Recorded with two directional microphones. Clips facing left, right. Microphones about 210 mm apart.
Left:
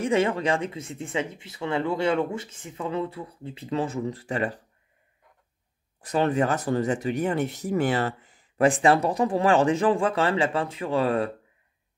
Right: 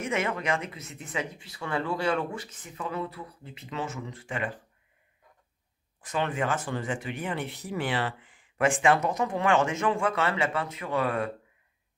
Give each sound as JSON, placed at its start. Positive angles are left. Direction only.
{"t": 0.0, "sound": "speech", "side_deg": 30}
{"t": 5.9, "sound": "speech", "side_deg": 40}